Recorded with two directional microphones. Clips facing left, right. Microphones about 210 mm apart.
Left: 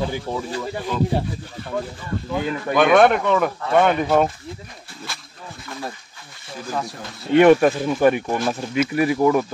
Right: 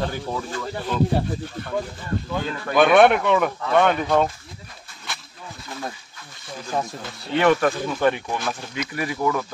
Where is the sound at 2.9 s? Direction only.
Centre (ahead or behind).